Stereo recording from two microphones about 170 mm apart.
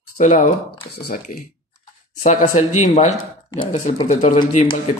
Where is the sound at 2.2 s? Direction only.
45° left (ahead or behind).